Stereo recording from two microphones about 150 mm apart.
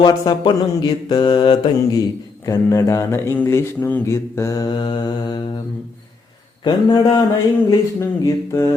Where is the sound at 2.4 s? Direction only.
20° left (ahead or behind).